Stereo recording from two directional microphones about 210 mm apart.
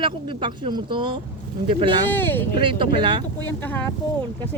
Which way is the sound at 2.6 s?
25° right (ahead or behind).